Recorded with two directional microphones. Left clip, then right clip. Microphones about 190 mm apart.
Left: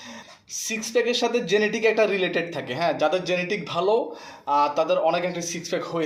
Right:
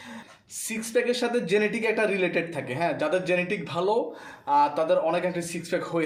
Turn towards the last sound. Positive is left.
turn(degrees=-20)  # may be behind; listen again after turning